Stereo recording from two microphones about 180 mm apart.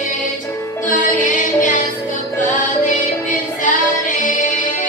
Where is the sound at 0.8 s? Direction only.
45° left (ahead or behind).